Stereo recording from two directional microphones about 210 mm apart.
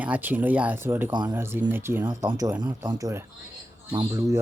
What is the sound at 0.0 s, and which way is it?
Speech, 10° right (ahead or behind).